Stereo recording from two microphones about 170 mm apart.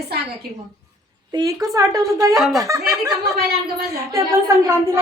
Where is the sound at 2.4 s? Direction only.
Centre (ahead or behind).